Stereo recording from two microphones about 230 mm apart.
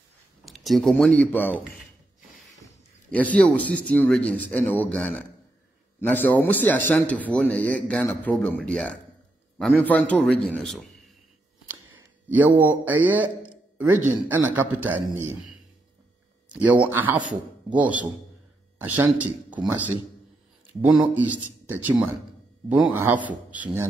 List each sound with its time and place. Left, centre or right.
0.5 s a man's voice: centre
2.6 s a man's voice: centre
12.3 s a man's voice: centre
20.8 s a man's voice: centre